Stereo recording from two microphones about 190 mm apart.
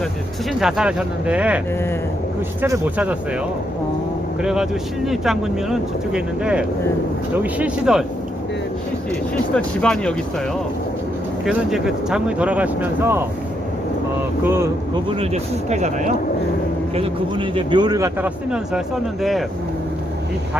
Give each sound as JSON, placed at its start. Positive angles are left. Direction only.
{"t": 0.6, "sound": "speech", "side_deg": -5}
{"t": 4.4, "sound": "speech", "side_deg": -5}
{"t": 9.6, "sound": "speech", "side_deg": 5}
{"t": 11.4, "sound": "speech", "side_deg": -5}
{"t": 14.4, "sound": "speech", "side_deg": -15}
{"t": 15.2, "sound": "speech", "side_deg": -35}
{"t": 16.9, "sound": "speech", "side_deg": -30}
{"t": 19.2, "sound": "speech", "side_deg": 0}